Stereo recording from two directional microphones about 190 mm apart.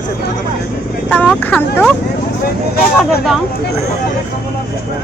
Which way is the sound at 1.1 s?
10° left (ahead or behind).